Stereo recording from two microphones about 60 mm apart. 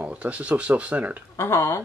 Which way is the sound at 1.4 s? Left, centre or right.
Left.